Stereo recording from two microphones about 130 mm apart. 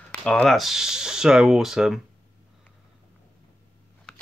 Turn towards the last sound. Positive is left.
turn(degrees=5)  # may be behind; listen again after turning